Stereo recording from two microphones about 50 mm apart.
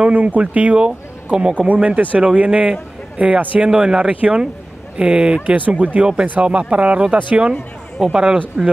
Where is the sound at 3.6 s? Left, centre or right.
Centre.